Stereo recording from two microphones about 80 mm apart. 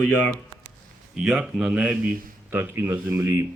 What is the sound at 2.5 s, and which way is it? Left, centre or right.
Speech, right.